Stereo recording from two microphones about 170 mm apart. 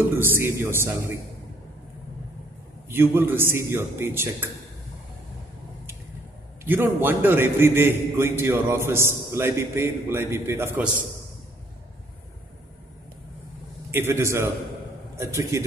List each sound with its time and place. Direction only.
0.2 s a man's voice: 15° right (ahead or behind)
2.9 s a man's voice: 10° right (ahead or behind)
6.6 s a man's voice: 10° right (ahead or behind)
13.9 s a man's voice: 15° right (ahead or behind)